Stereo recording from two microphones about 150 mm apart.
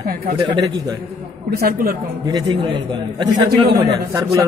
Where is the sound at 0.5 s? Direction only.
25° right (ahead or behind).